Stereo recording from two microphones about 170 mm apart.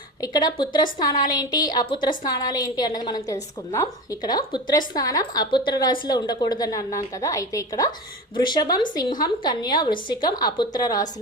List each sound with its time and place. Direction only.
0.2 s a woman's voice: 25° left (ahead or behind)